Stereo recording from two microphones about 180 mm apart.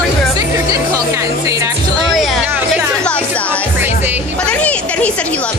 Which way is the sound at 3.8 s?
10° right (ahead or behind).